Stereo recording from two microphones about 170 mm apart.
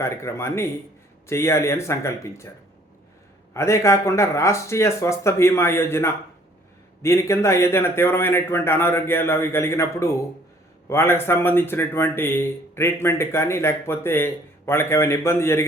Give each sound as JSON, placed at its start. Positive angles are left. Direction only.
{"t": 0.0, "sound": "speech", "side_deg": 15}
{"t": 3.5, "sound": "speech", "side_deg": 15}